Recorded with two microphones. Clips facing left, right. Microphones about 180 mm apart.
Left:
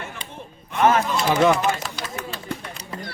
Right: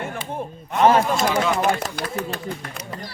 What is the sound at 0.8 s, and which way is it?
Speech, 30° right (ahead or behind).